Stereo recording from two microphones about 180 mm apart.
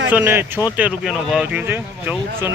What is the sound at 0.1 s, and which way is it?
Speech, 10° right (ahead or behind).